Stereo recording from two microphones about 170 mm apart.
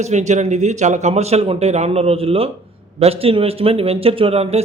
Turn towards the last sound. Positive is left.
turn(degrees=-35)  # may be behind; listen again after turning